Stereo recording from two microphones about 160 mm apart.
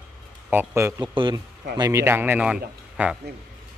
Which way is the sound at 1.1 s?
30° right (ahead or behind).